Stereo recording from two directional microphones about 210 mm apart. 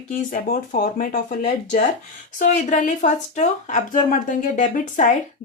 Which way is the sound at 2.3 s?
35° left (ahead or behind).